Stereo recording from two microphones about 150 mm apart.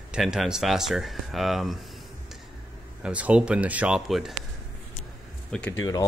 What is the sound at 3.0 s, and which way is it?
Speech, 10° right (ahead or behind).